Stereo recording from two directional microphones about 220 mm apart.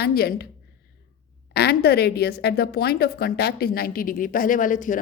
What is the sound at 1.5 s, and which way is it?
A woman's voice, 45° left (ahead or behind).